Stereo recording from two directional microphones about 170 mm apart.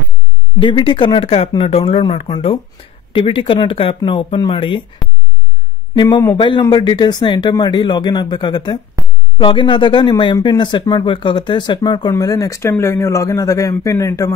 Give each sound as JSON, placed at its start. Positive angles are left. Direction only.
{"t": 0.6, "sound": "speech", "side_deg": 30}
{"t": 5.9, "sound": "speech", "side_deg": 20}
{"t": 9.0, "sound": "a sound", "side_deg": -20}
{"t": 9.4, "sound": "speech", "side_deg": 30}